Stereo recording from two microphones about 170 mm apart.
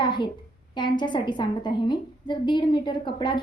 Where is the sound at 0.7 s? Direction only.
25° left (ahead or behind).